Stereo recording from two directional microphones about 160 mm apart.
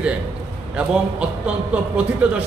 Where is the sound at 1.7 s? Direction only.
5° right (ahead or behind).